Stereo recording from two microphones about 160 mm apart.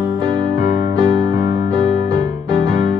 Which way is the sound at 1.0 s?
30° right (ahead or behind).